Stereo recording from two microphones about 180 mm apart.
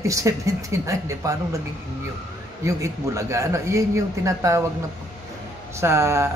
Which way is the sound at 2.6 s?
15° right (ahead or behind).